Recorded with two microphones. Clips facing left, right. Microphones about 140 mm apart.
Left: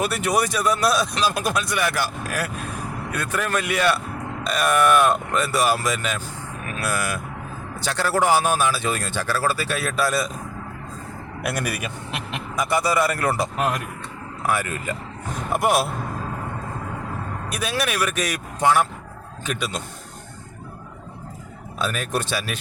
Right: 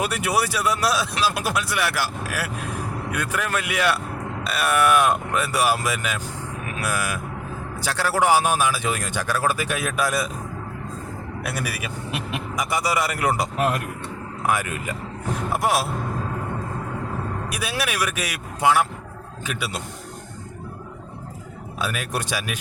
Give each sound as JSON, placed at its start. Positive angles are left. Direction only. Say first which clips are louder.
{"t": 0.0, "sound": "speech", "louder": "left 1 dB", "side_deg": -10}
{"t": 11.4, "sound": "speech", "louder": "left 4 dB", "side_deg": -5}
{"t": 13.6, "sound": "speech", "louder": "right 1 dB", "side_deg": -5}
{"t": 14.4, "sound": "speech", "louder": "even", "side_deg": -15}
{"t": 15.5, "sound": "speech", "louder": "left 3 dB", "side_deg": 0}
{"t": 17.5, "sound": "speech", "louder": "left 4 dB", "side_deg": -10}
{"t": 21.8, "sound": "speech", "louder": "left 2 dB", "side_deg": -10}